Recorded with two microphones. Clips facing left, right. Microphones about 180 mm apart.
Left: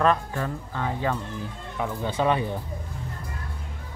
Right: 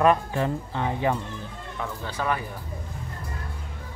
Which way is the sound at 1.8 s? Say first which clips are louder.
Left 5 dB; 20° left (ahead or behind).